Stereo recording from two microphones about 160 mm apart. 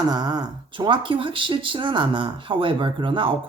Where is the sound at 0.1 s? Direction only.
25° right (ahead or behind).